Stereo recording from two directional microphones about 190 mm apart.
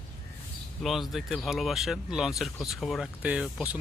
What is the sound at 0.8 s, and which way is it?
Speech, centre (ahead or behind).